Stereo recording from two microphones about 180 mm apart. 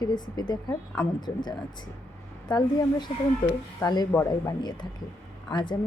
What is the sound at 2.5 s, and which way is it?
A woman's voice, 25° left (ahead or behind).